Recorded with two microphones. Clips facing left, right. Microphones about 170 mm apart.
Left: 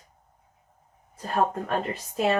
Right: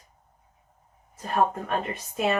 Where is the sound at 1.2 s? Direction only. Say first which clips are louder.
Right 1 dB; 40° left (ahead or behind).